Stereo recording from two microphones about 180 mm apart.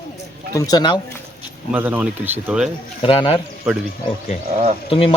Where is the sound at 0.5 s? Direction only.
20° left (ahead or behind).